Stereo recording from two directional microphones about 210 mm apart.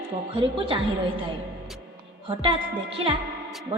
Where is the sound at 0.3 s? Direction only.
25° right (ahead or behind).